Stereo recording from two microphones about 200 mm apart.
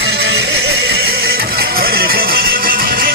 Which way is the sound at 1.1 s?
50° right (ahead or behind).